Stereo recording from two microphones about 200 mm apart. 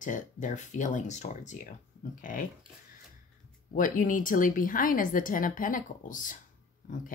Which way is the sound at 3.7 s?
40° left (ahead or behind).